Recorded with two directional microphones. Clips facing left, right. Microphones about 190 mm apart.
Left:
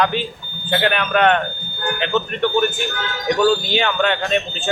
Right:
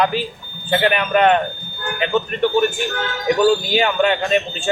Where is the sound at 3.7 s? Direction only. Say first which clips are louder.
Right 2 dB; 10° right (ahead or behind).